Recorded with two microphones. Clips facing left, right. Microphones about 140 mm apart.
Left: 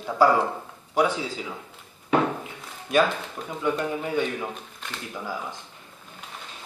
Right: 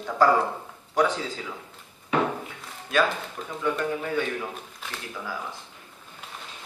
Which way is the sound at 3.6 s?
15° left (ahead or behind).